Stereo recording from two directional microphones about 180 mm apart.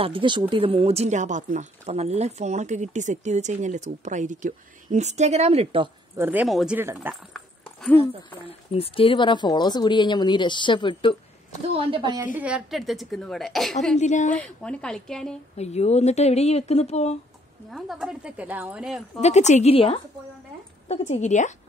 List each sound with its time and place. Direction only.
0.0 s speech: 30° right (ahead or behind)
6.1 s speech: 10° right (ahead or behind)
7.3 s dog: centre (ahead or behind)
8.7 s speech: 30° left (ahead or behind)
11.9 s a woman's voice: 25° right (ahead or behind)
12.4 s speech: 5° right (ahead or behind)
13.9 s speech: 40° left (ahead or behind)
14.4 s speech: 5° left (ahead or behind)
15.5 s speech: 35° left (ahead or behind)
17.6 s speech: centre (ahead or behind)
19.2 s speech: 40° left (ahead or behind)
21.1 s speech: 40° left (ahead or behind)